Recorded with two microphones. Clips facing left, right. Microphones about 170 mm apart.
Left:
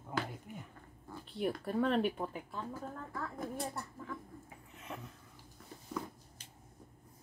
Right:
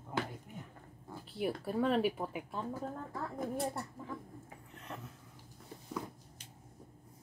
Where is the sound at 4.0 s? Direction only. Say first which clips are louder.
Even; 20° right (ahead or behind).